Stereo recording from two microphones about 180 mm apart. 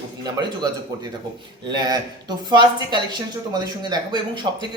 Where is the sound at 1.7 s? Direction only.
25° right (ahead or behind).